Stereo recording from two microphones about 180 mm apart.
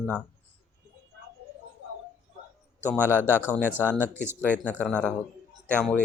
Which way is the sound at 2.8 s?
10° right (ahead or behind).